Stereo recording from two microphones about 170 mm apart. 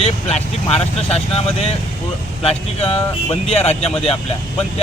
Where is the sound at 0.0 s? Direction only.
40° left (ahead or behind).